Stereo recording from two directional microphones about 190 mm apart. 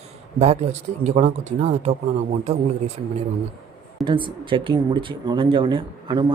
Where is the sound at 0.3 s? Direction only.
35° right (ahead or behind).